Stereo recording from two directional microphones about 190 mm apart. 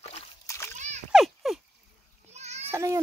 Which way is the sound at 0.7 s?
40° right (ahead or behind).